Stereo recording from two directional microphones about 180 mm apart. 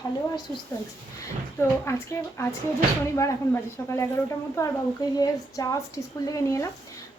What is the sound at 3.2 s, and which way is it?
Speech, 15° left (ahead or behind).